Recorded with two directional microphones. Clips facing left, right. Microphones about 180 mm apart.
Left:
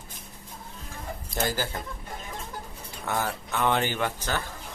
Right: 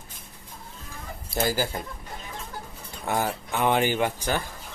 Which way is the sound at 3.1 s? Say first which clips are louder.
Right 3 dB; 15° right (ahead or behind).